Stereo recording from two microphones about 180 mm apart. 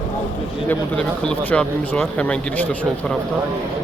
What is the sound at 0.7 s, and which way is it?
Speech, 5° left (ahead or behind).